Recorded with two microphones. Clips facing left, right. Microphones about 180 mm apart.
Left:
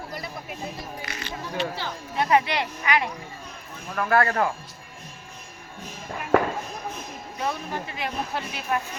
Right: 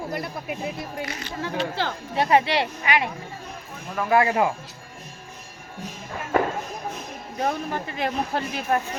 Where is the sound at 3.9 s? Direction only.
10° right (ahead or behind).